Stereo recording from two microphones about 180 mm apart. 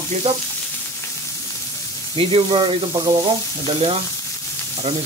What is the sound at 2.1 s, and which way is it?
Speech, 30° right (ahead or behind).